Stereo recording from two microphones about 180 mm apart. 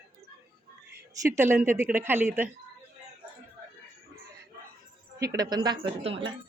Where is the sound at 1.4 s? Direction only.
10° right (ahead or behind).